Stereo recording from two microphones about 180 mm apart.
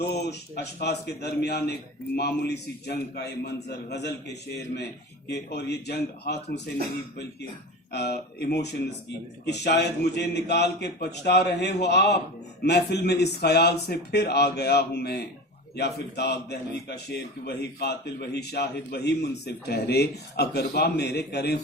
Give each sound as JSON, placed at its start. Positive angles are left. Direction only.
{"t": 0.1, "sound": "a man's voice", "side_deg": 65}
{"t": 7.9, "sound": "a man's voice", "side_deg": 65}